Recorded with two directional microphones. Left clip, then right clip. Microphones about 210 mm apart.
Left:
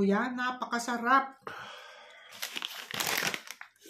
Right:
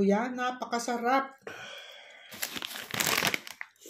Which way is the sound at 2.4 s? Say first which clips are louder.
Right 1 dB; 40° right (ahead or behind).